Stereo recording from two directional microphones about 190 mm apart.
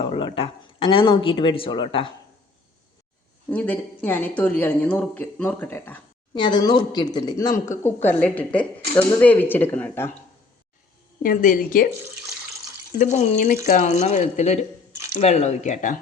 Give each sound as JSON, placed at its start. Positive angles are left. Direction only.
{"t": 0.0, "sound": "speech", "side_deg": 30}
{"t": 3.5, "sound": "speech", "side_deg": 10}
{"t": 6.3, "sound": "speech", "side_deg": 25}
{"t": 11.2, "sound": "a woman's voice", "side_deg": 45}
{"t": 13.0, "sound": "speech", "side_deg": 40}